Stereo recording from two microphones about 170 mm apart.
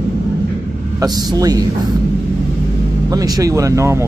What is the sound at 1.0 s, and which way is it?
Speech, 25° right (ahead or behind).